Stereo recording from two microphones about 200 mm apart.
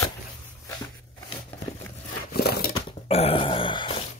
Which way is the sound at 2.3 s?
50° left (ahead or behind).